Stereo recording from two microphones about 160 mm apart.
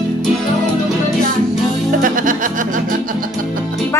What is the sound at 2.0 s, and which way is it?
Music, 55° right (ahead or behind).